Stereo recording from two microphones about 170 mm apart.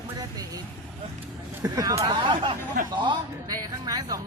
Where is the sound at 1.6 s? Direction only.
20° right (ahead or behind).